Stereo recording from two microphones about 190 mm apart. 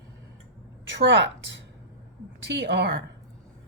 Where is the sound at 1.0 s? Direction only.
70° right (ahead or behind).